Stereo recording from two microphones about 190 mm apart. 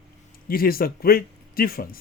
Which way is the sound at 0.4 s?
50° left (ahead or behind).